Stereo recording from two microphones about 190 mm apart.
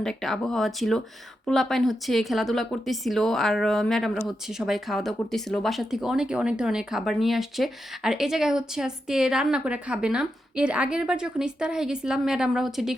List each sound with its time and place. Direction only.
0.0 s speech: centre (ahead or behind)